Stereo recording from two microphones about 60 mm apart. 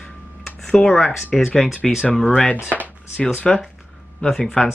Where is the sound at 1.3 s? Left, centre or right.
Centre.